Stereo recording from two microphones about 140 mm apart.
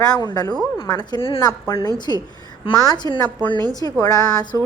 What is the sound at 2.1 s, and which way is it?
A woman's voice, 25° left (ahead or behind).